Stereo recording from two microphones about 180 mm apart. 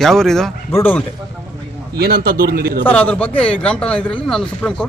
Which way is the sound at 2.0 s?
60° right (ahead or behind).